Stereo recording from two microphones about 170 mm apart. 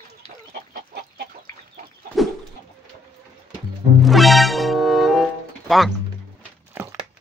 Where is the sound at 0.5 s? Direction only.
60° right (ahead or behind).